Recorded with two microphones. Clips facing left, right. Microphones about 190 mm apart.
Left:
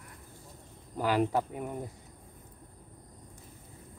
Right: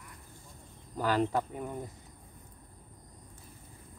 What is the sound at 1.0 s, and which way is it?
Speech, 10° left (ahead or behind).